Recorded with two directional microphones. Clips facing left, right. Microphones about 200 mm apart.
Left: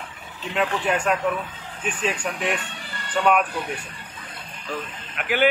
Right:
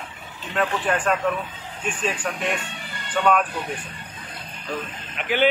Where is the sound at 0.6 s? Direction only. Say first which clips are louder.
Even; 10° left (ahead or behind).